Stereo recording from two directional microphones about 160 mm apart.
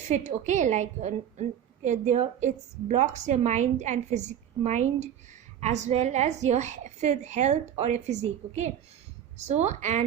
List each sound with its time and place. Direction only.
0.0 s a woman's voice: 45° right (ahead or behind)